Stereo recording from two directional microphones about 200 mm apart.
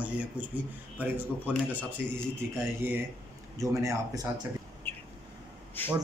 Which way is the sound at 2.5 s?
10° right (ahead or behind).